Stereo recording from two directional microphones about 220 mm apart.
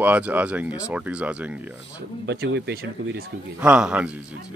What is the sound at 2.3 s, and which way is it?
Speech, 50° right (ahead or behind).